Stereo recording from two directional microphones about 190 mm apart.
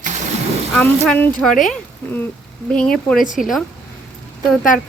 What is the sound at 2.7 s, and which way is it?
Speech, 5° left (ahead or behind).